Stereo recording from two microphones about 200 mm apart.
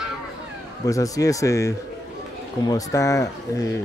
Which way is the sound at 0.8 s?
15° left (ahead or behind).